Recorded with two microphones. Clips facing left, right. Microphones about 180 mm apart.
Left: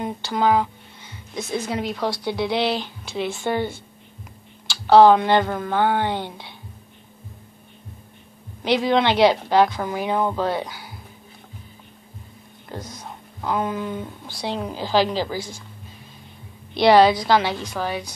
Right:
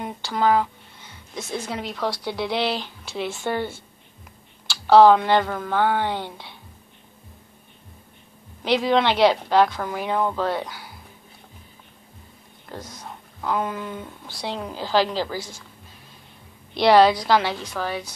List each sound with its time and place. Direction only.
0.3 s speech: 5° left (ahead or behind)
1.7 s speech: 5° left (ahead or behind)
3.3 s a woman's voice: 15° left (ahead or behind)
4.6 s speech: 5° right (ahead or behind)
8.6 s speech: centre (ahead or behind)
12.7 s speech: centre (ahead or behind)
16.7 s speech: centre (ahead or behind)